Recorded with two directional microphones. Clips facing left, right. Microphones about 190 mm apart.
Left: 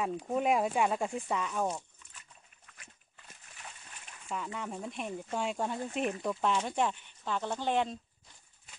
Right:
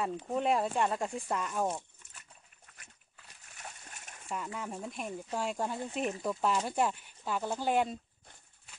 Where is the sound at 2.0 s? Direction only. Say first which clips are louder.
Even; 40° right (ahead or behind).